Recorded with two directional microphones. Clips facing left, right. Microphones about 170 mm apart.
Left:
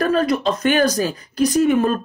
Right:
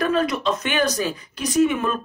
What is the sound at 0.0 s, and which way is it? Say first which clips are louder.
A woman's voice: left 3 dB; 40° left (ahead or behind).